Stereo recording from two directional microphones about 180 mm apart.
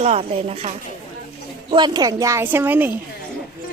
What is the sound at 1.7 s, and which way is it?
A woman's voice, 25° right (ahead or behind).